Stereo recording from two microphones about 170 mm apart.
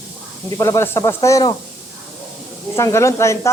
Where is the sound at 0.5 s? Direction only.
20° left (ahead or behind).